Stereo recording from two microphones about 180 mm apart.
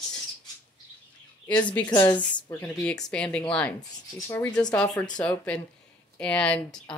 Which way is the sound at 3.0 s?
5° left (ahead or behind).